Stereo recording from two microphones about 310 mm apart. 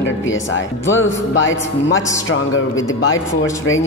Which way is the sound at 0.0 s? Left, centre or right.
Left.